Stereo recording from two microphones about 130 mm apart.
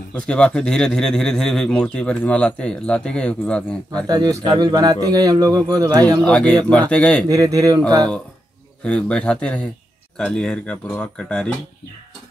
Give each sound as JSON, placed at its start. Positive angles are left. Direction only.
{"t": 0.1, "sound": "a man's voice", "side_deg": 5}
{"t": 4.1, "sound": "speech", "side_deg": -30}
{"t": 6.2, "sound": "a man's voice", "side_deg": 5}
{"t": 7.2, "sound": "speech", "side_deg": -25}
{"t": 8.8, "sound": "a man's voice", "side_deg": 10}